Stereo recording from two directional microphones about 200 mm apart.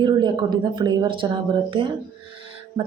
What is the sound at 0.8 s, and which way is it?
Speech, 25° right (ahead or behind).